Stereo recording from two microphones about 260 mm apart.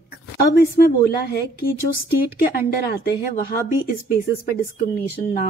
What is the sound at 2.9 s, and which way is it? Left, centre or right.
Speech, left.